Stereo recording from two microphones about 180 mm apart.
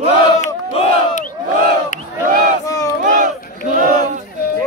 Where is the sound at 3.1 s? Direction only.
50° right (ahead or behind).